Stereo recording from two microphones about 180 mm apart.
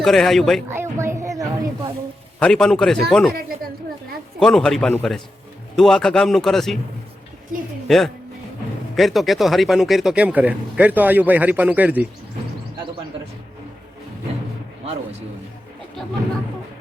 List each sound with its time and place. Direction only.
0.0 s a man's voice: centre (ahead or behind)
0.7 s a sound: 15° right (ahead or behind)
2.4 s a man's voice: 5° left (ahead or behind)
4.4 s a man's voice: centre (ahead or behind)
7.9 s speech: centre (ahead or behind)